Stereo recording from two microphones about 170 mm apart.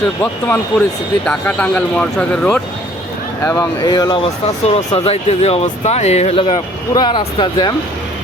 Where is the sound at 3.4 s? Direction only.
20° left (ahead or behind).